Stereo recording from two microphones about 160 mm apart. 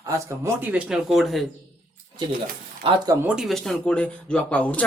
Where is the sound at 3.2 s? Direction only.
5° right (ahead or behind).